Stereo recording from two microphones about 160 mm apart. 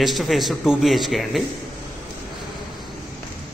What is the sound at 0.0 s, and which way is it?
A man's voice, centre (ahead or behind).